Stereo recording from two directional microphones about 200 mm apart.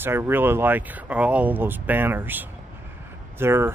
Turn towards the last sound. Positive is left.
turn(degrees=-10)  # may be behind; listen again after turning